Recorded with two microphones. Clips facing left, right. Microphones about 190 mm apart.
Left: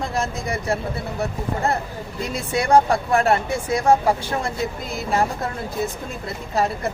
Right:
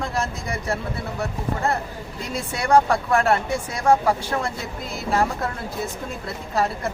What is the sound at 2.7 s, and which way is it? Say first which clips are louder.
Speech: left 1 dB; 20° left (ahead or behind).